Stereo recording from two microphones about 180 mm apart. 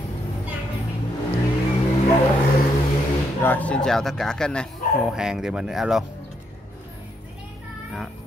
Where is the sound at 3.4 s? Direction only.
10° left (ahead or behind).